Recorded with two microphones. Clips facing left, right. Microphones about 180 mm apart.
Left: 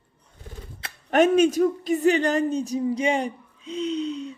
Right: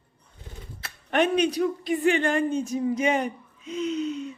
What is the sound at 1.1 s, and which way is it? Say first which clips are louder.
A woman's voice: left 5 dB; 45° left (ahead or behind).